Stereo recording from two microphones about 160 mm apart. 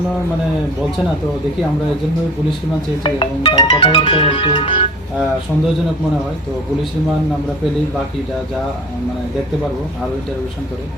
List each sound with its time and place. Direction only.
3.0 s speech: 30° left (ahead or behind)